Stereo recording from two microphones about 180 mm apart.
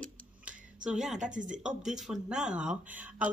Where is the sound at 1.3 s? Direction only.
45° right (ahead or behind).